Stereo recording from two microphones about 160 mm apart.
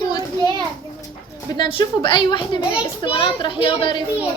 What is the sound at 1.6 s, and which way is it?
A woman's voice, 30° left (ahead or behind).